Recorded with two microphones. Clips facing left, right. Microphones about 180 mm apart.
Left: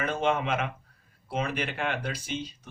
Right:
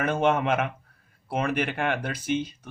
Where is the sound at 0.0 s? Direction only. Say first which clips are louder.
Right 4 dB; 55° right (ahead or behind).